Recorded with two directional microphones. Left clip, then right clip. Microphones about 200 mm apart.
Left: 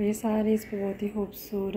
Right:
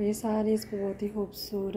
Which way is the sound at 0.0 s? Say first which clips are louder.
Left 1 dB; centre (ahead or behind).